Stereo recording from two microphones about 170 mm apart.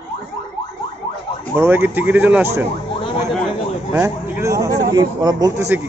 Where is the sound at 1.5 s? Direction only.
15° right (ahead or behind).